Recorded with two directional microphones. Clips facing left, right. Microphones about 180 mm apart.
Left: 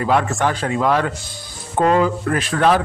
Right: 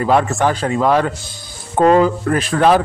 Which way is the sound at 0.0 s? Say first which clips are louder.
Right 3 dB; 35° right (ahead or behind).